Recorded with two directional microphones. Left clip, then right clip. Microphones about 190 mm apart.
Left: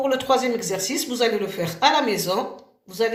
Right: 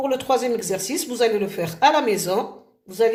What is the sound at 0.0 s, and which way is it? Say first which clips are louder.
Speech: left 1 dB; 45° right (ahead or behind).